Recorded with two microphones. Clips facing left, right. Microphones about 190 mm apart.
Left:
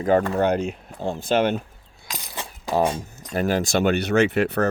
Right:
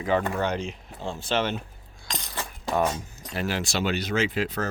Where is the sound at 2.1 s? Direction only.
5° left (ahead or behind).